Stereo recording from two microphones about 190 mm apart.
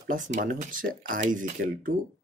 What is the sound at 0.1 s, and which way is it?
Speech, 40° right (ahead or behind).